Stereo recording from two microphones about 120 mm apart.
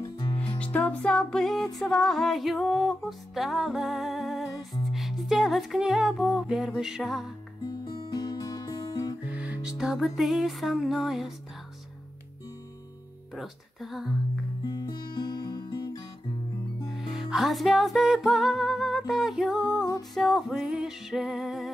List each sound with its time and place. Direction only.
0.0 s music: 35° left (ahead or behind)
0.6 s music: 10° left (ahead or behind); by 7.3 s 5° right (ahead or behind)
7.6 s music: 40° left (ahead or behind)
9.3 s music: 10° right (ahead or behind)
13.3 s music: centre (ahead or behind)
14.7 s music: 35° left (ahead or behind)
16.9 s music: centre (ahead or behind)